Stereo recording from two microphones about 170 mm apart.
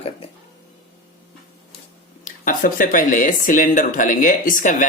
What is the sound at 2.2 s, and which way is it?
A man's voice, 50° left (ahead or behind).